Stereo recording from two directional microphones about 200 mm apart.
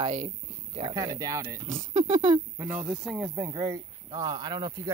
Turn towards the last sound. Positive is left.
turn(degrees=-20)  # may be behind; listen again after turning